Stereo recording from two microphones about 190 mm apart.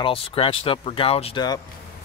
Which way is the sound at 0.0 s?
30° left (ahead or behind).